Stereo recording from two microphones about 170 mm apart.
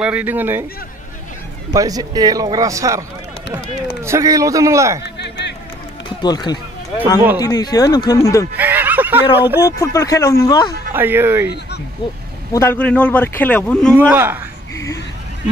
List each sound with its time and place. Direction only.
0.0 s speech: 10° right (ahead or behind)
1.7 s a man's voice: 20° right (ahead or behind)
6.2 s speech: 25° left (ahead or behind)
8.5 s speech: 10° right (ahead or behind)
9.6 s speech: 20° left (ahead or behind)
10.9 s speech: 15° right (ahead or behind)
12.5 s speech: 10° left (ahead or behind)
13.9 s speech: 15° right (ahead or behind)